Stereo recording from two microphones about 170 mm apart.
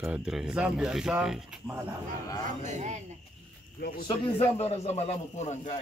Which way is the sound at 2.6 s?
45° right (ahead or behind).